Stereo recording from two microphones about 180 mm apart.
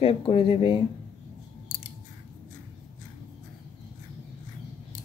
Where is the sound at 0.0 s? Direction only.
30° left (ahead or behind).